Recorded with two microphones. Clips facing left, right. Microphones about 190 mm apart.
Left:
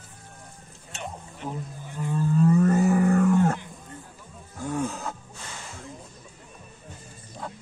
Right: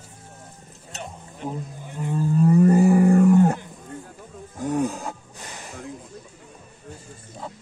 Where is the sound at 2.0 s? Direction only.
15° right (ahead or behind).